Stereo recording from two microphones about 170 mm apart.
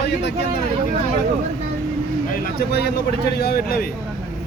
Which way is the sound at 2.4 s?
65° left (ahead or behind).